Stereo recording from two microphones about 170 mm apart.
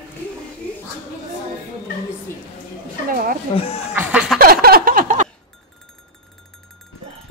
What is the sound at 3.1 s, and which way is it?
Speech, 60° right (ahead or behind).